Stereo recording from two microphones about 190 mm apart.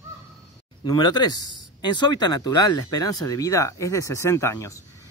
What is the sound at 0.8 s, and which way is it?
Speech, 20° left (ahead or behind).